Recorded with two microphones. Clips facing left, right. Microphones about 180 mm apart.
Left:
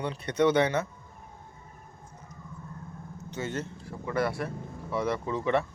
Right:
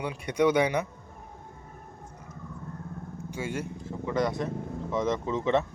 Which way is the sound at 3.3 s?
10° right (ahead or behind).